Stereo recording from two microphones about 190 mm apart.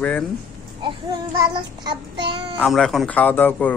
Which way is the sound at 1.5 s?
25° right (ahead or behind).